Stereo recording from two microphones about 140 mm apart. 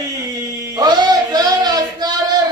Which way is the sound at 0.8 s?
25° right (ahead or behind).